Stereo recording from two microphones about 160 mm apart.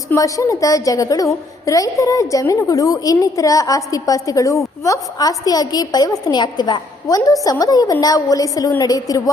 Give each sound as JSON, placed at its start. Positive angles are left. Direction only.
{"t": 0.1, "sound": "a woman's voice", "side_deg": 20}